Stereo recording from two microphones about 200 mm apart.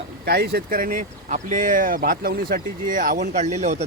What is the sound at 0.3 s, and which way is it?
Speech, 50° right (ahead or behind).